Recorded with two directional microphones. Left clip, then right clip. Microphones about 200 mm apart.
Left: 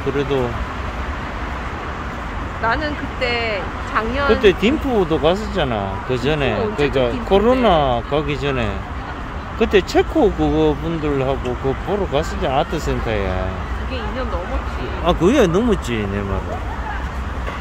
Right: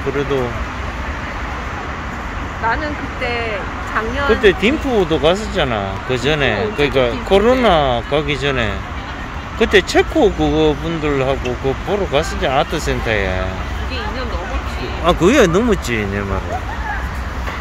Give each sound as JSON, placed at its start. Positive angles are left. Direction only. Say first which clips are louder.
{"t": 2.7, "sound": "speech", "louder": "right 1 dB", "side_deg": 45}
{"t": 4.3, "sound": "speech", "louder": "right 2 dB", "side_deg": 10}
{"t": 15.0, "sound": "speech", "louder": "right 3 dB", "side_deg": 0}